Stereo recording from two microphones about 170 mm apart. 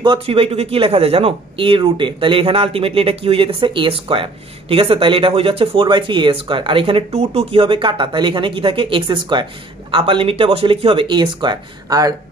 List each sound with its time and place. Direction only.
0.0 s speech: 30° right (ahead or behind)